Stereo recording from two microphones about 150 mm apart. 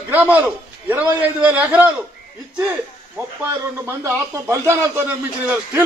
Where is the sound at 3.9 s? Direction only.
20° right (ahead or behind).